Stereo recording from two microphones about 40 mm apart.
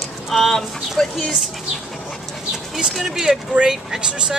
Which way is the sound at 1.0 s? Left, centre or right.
Centre.